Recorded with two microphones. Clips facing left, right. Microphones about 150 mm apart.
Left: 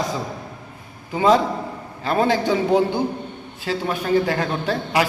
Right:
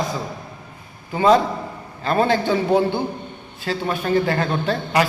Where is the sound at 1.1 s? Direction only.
15° left (ahead or behind).